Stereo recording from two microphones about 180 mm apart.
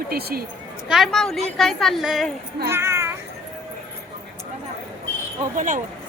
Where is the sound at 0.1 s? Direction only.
60° right (ahead or behind).